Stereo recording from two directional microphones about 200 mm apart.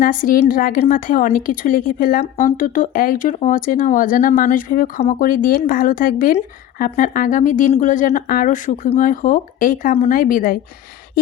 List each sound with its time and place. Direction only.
0.0 s speech: 45° left (ahead or behind)